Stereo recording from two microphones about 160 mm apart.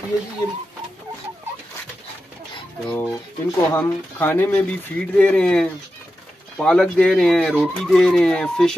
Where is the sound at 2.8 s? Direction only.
10° left (ahead or behind).